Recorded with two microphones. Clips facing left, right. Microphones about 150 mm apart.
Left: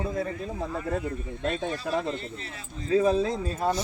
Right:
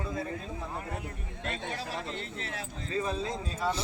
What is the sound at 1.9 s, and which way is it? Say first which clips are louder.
Speech: left 9 dB; 90° left.